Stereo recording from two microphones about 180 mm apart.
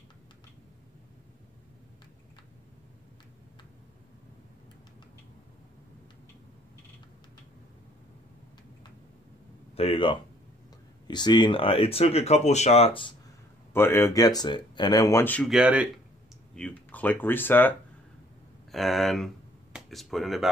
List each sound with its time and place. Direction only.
9.8 s a sound: 30° left (ahead or behind)
11.1 s speech: 25° left (ahead or behind)
13.7 s speech: 15° left (ahead or behind)
15.5 s speech: 5° right (ahead or behind)
16.5 s speech: 5° left (ahead or behind)